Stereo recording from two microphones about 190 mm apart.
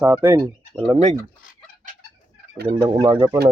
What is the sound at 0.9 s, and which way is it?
Speech, 35° right (ahead or behind).